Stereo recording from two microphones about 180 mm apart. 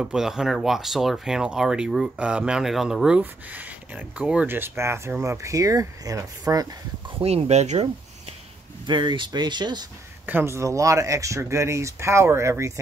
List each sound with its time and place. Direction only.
0.0 s speech: 5° right (ahead or behind); by 6.7 s 20° right (ahead or behind)
7.2 s speech: 35° right (ahead or behind)
8.8 s speech: 25° right (ahead or behind)
10.2 s speech: 10° right (ahead or behind)